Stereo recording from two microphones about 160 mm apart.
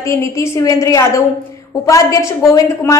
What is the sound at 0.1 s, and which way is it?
A woman's voice, 20° left (ahead or behind).